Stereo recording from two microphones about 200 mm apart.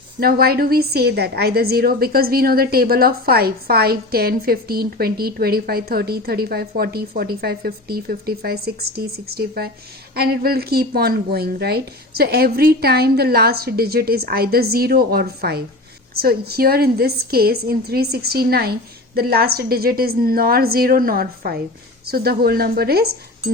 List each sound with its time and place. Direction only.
0.2 s a woman's voice: 50° right (ahead or behind)